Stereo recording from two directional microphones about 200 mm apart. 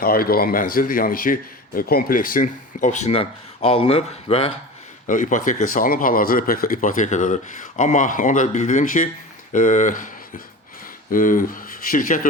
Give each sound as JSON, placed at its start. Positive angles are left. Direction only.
{"t": 0.0, "sound": "speech", "side_deg": 50}
{"t": 5.0, "sound": "speech", "side_deg": 40}